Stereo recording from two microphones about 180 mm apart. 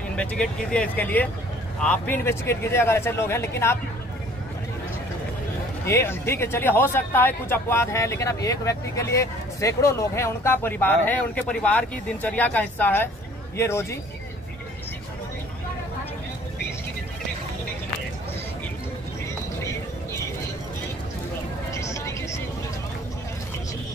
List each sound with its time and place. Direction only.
0.1 s a man's voice: 5° left (ahead or behind)
5.9 s a man's voice: 15° left (ahead or behind)
21.7 s vehicle: 15° left (ahead or behind)